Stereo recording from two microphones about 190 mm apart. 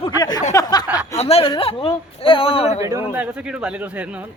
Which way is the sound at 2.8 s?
10° right (ahead or behind).